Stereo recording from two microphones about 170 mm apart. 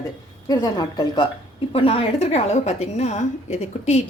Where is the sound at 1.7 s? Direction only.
35° left (ahead or behind).